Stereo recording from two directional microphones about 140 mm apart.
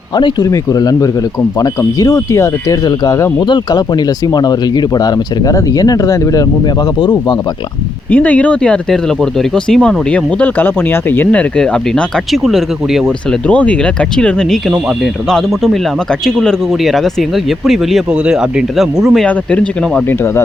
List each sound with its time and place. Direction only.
0.2 s speech: 35° left (ahead or behind)
8.1 s speech: 10° left (ahead or behind)
13.5 s speech: 10° left (ahead or behind)
19.3 s speech: 10° left (ahead or behind)